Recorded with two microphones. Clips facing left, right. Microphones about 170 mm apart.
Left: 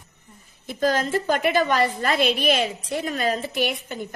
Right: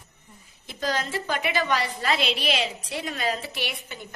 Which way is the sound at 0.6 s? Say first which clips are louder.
Left 6 dB; 50° left (ahead or behind).